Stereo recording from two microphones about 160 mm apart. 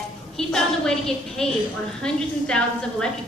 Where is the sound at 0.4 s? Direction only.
5° left (ahead or behind).